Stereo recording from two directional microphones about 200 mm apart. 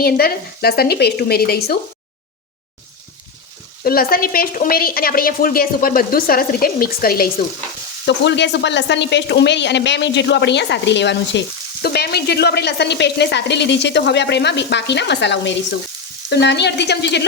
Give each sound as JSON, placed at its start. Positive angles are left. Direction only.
{"t": 0.0, "sound": "speech", "side_deg": 50}
{"t": 3.8, "sound": "speech", "side_deg": 50}
{"t": 8.0, "sound": "speech", "side_deg": 60}